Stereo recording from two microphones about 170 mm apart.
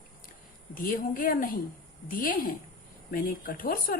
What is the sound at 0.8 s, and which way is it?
A woman's voice, 55° left (ahead or behind).